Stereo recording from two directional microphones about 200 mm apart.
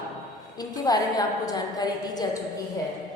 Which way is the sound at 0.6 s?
20° left (ahead or behind).